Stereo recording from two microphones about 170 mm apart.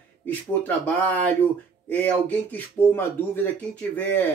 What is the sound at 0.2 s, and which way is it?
Speech, 10° left (ahead or behind).